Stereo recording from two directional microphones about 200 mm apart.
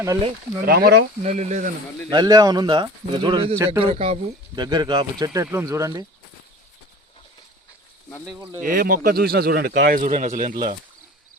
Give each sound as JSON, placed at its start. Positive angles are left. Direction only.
{"t": 0.6, "sound": "speech", "side_deg": -55}
{"t": 1.2, "sound": "speech", "side_deg": -35}
{"t": 2.0, "sound": "speech", "side_deg": -20}
{"t": 8.6, "sound": "speech", "side_deg": -45}